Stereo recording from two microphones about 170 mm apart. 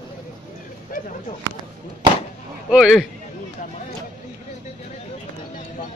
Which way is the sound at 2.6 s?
Centre (ahead or behind).